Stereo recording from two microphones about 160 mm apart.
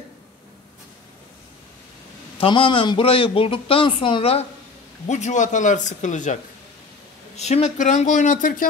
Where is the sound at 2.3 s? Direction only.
35° left (ahead or behind); by 6.3 s 50° left (ahead or behind).